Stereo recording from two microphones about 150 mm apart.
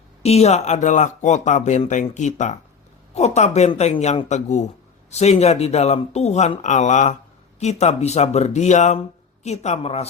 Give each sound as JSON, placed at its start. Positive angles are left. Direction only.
{"t": 0.2, "sound": "speech", "side_deg": 45}